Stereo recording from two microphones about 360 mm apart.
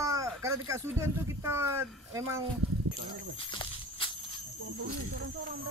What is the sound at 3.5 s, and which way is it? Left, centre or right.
Walk, centre.